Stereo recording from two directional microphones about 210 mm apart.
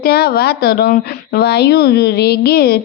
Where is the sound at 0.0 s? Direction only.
45° left (ahead or behind).